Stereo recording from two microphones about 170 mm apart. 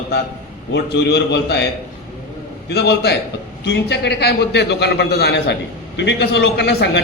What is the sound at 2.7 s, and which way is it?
Speech, 75° left (ahead or behind).